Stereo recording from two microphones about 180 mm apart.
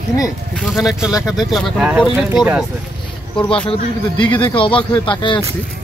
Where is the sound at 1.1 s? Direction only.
20° left (ahead or behind).